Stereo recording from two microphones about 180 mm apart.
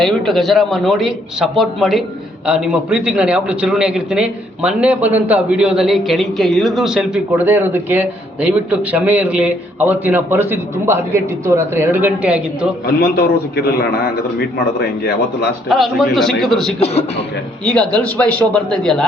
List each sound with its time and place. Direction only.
0.0 s a man's voice: centre (ahead or behind)
12.8 s a man's voice: 60° left (ahead or behind)
15.7 s a man's voice: centre (ahead or behind)
16.8 s a man's voice: 35° left (ahead or behind)
17.7 s a man's voice: 5° left (ahead or behind)